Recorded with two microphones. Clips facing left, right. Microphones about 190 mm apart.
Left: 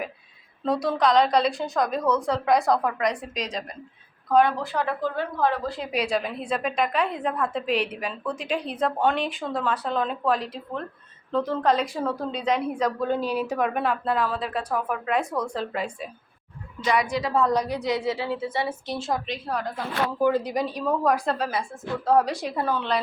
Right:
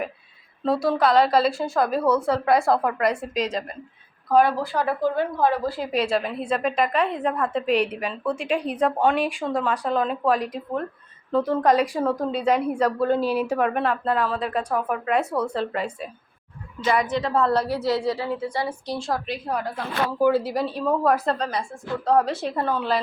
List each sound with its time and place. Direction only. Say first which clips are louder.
0.6 s a woman's voice: right 2 dB; 5° right (ahead or behind)
13.7 s a woman's voice: right 2 dB; centre (ahead or behind)
14.7 s a woman's voice: right 1 dB; 5° right (ahead or behind)
15.5 s a woman's voice: right 3 dB; 10° left (ahead or behind)
16.8 s a woman's voice: right 2 dB; 5° right (ahead or behind)
17.1 s a woman's voice: right 1 dB; 10° left (ahead or behind)
18.9 s a woman's voice: right 1 dB; centre (ahead or behind)
21.2 s a woman's voice: right 1 dB; 5° left (ahead or behind)
22.3 s a woman's voice: right 2 dB; 15° left (ahead or behind)